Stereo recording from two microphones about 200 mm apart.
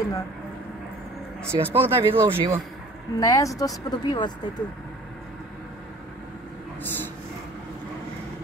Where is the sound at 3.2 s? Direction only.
15° left (ahead or behind).